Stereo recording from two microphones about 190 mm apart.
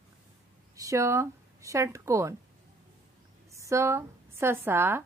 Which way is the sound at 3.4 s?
15° right (ahead or behind).